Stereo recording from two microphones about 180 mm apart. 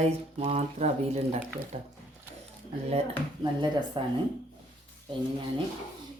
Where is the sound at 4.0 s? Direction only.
30° right (ahead or behind).